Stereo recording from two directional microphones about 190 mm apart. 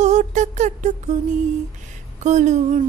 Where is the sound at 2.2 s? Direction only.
40° right (ahead or behind).